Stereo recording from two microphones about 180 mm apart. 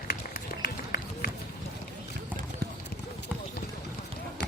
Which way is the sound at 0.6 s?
55° left (ahead or behind).